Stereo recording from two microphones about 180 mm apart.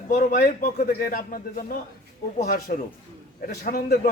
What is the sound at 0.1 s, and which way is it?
A man's voice, 50° left (ahead or behind).